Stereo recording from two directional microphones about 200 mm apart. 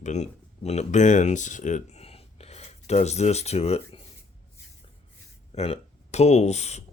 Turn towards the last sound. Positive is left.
turn(degrees=35)  # may be behind; listen again after turning